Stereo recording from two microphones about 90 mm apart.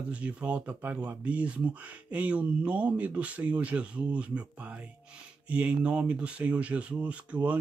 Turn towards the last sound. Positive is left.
turn(degrees=-15)  # may be behind; listen again after turning